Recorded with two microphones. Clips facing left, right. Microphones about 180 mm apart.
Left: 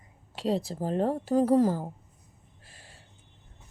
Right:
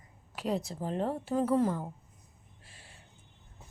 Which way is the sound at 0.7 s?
40° left (ahead or behind).